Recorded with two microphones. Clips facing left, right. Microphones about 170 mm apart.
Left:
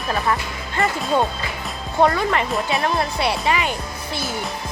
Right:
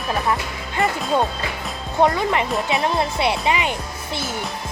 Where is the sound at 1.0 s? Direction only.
Centre (ahead or behind).